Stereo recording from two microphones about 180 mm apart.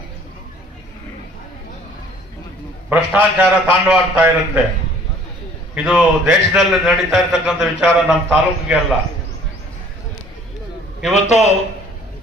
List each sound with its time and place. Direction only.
2.9 s a man's voice: 10° right (ahead or behind)
5.7 s a man's voice: 5° right (ahead or behind)
11.1 s a man's voice: 40° left (ahead or behind)